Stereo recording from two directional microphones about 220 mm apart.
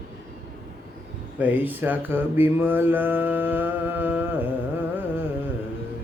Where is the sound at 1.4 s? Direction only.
10° right (ahead or behind).